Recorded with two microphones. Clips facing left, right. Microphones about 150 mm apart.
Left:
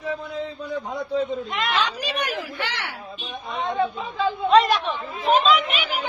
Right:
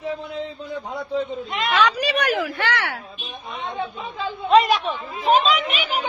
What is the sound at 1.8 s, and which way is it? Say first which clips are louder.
A woman's voice: right 6 dB; 70° right (ahead or behind).